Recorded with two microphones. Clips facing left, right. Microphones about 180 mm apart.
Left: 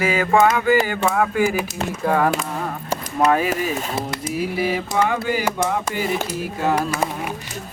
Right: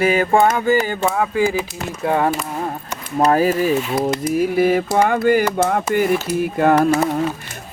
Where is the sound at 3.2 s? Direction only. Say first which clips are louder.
Right 4 dB; 40° right (ahead or behind).